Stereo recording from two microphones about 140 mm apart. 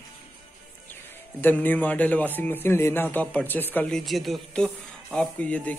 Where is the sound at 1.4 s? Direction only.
15° left (ahead or behind).